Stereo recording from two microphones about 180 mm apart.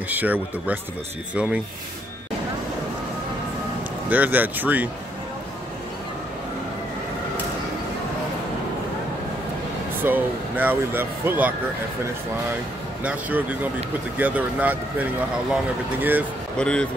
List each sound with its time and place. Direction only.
0.1 s speech: 10° right (ahead or behind)
4.1 s speech: 10° right (ahead or behind)
10.0 s speech: 10° right (ahead or behind)
13.0 s speech: 10° right (ahead or behind)
16.5 s speech: 5° left (ahead or behind)